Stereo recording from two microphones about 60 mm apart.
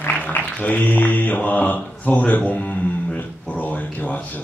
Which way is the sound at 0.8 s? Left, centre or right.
Left.